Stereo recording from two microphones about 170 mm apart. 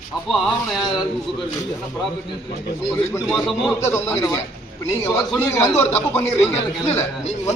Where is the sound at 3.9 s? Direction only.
15° left (ahead or behind).